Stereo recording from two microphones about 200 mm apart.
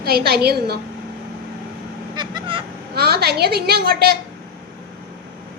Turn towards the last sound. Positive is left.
turn(degrees=-50)  # may be behind; listen again after turning